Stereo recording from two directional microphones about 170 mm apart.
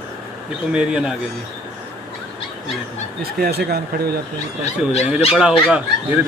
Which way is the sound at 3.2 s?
65° right (ahead or behind).